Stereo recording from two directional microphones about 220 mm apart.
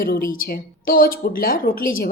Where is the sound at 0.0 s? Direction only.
40° left (ahead or behind).